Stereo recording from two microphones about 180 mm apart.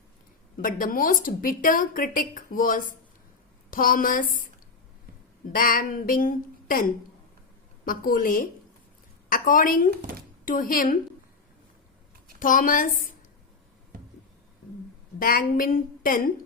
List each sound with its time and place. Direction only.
0.5 s a woman's voice: 50° left (ahead or behind)
5.5 s a woman's voice: 50° left (ahead or behind)
7.9 s a woman's voice: 50° left (ahead or behind)
12.4 s a woman's voice: 50° left (ahead or behind)
15.2 s a woman's voice: 50° left (ahead or behind)